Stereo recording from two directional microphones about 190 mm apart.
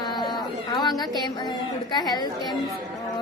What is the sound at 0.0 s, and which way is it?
Music, 25° left (ahead or behind).